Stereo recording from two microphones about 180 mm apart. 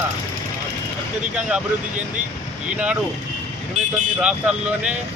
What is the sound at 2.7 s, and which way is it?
Speech, 5° right (ahead or behind).